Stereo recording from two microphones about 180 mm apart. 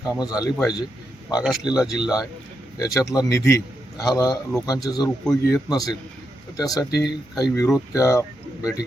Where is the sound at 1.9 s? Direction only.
5° right (ahead or behind).